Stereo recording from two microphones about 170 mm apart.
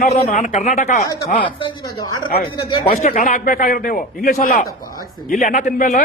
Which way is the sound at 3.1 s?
50° left (ahead or behind).